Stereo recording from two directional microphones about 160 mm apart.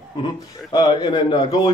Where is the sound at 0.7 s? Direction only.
25° left (ahead or behind).